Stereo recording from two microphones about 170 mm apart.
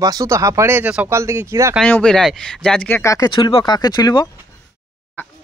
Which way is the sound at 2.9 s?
15° left (ahead or behind).